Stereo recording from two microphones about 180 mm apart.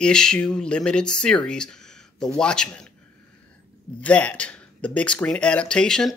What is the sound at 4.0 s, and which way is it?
Speech, 5° left (ahead or behind).